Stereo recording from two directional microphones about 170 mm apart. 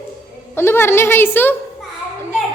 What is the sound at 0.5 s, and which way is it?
A woman's voice, 15° left (ahead or behind).